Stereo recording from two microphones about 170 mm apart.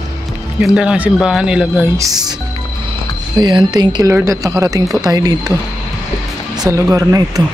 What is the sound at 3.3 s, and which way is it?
Speech, 25° right (ahead or behind).